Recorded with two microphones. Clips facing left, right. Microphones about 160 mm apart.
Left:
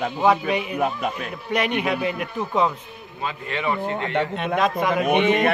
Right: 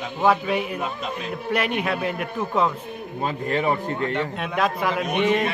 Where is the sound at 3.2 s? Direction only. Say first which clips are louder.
Right 4 dB; 45° right (ahead or behind).